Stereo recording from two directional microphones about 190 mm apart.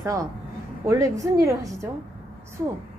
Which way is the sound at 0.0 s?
15° right (ahead or behind).